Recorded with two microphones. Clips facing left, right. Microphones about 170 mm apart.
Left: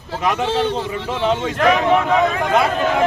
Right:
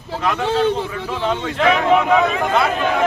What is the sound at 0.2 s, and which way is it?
A man's voice, 15° left (ahead or behind).